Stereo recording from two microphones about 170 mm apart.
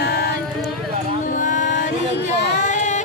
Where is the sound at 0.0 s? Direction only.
75° left (ahead or behind).